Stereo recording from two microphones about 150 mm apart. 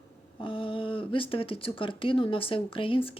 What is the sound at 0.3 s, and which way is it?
Speech, 35° left (ahead or behind).